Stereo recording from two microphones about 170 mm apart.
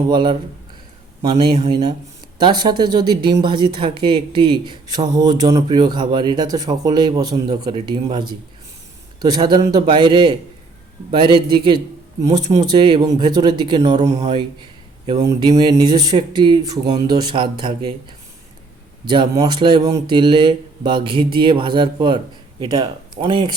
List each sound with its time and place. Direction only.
0.1 s speech: 25° right (ahead or behind)
1.3 s speech: 40° right (ahead or behind)
2.4 s speech: 25° right (ahead or behind)
14.0 s speech: 40° right (ahead or behind)
15.0 s speech: 25° right (ahead or behind)
19.0 s speech: 25° right (ahead or behind)